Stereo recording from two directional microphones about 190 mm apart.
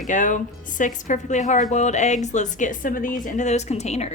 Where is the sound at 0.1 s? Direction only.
40° left (ahead or behind).